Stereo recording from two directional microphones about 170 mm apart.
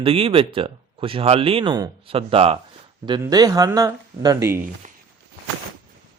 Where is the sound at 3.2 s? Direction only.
20° right (ahead or behind).